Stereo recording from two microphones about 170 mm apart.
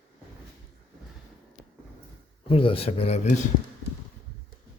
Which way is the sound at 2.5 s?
30° left (ahead or behind).